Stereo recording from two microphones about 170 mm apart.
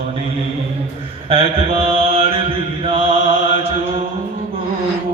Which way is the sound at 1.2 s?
35° right (ahead or behind).